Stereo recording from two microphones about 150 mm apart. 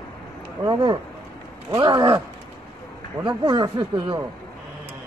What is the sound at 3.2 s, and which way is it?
A man's voice, 30° right (ahead or behind).